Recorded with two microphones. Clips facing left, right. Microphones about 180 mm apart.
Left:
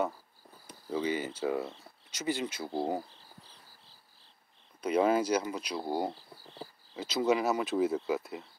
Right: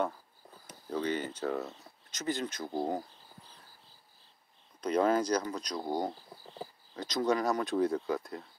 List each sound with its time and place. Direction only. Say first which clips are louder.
0.8 s speech: left 1 dB; 10° left (ahead or behind)
4.8 s speech: left 1 dB; 10° left (ahead or behind)